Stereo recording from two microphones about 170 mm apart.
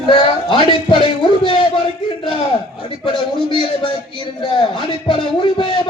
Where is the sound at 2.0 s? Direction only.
30° left (ahead or behind).